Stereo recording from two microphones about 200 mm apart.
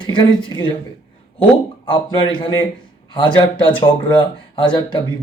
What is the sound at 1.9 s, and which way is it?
Speech, 20° left (ahead or behind).